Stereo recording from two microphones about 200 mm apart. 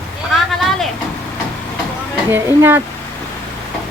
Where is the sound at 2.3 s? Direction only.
10° right (ahead or behind).